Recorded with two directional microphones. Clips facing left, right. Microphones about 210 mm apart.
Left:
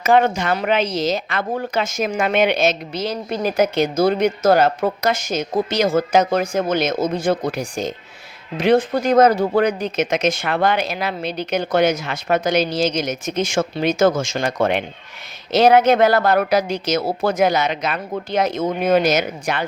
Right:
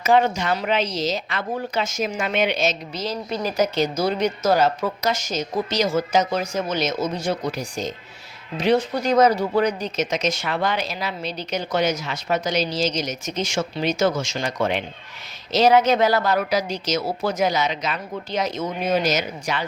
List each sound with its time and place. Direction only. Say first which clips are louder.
0.0 s speech: left 3 dB; 55° left (ahead or behind)